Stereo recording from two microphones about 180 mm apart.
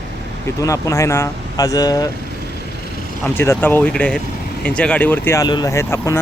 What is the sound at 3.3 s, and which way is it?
Speech, 10° left (ahead or behind).